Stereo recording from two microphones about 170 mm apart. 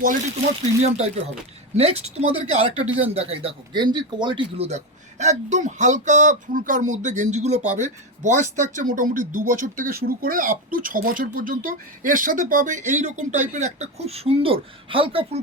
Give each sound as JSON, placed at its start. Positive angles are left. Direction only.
{"t": 0.8, "sound": "speech", "side_deg": -40}